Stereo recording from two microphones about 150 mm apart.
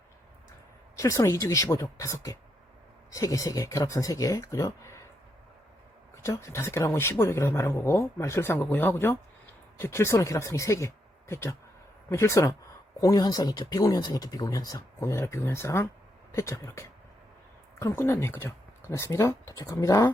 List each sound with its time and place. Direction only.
0.9 s speech: 20° left (ahead or behind)
6.2 s speech: 20° left (ahead or behind)